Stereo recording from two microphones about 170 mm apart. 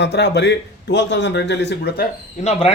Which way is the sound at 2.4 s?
35° left (ahead or behind).